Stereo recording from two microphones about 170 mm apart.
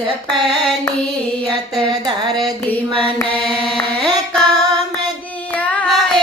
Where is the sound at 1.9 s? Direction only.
25° right (ahead or behind).